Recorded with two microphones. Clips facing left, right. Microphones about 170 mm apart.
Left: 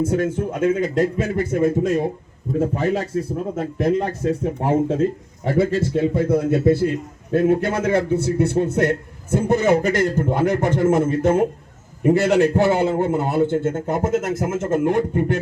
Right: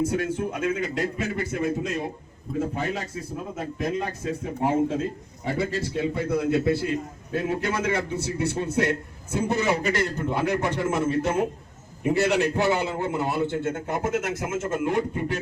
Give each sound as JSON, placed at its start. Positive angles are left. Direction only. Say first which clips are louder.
{"t": 0.0, "sound": "a man's voice", "louder": "left 5 dB", "side_deg": 50}
{"t": 5.5, "sound": "a man's voice", "louder": "left 8 dB", "side_deg": 50}